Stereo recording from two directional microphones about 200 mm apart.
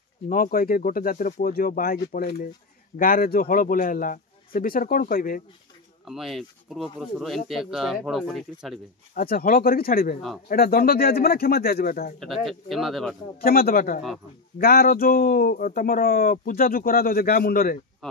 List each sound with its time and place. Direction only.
0.3 s speech: 45° left (ahead or behind)
6.0 s speech: centre (ahead or behind)
9.1 s speech: 50° left (ahead or behind)
12.2 s speech: centre (ahead or behind)
13.4 s speech: 50° left (ahead or behind)